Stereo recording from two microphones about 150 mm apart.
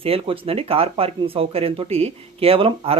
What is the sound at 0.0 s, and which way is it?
Speech, 40° right (ahead or behind).